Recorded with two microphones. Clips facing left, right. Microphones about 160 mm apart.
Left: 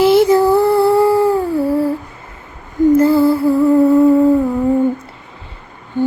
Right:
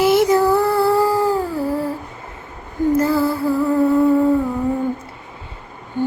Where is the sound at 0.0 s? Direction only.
30° left (ahead or behind).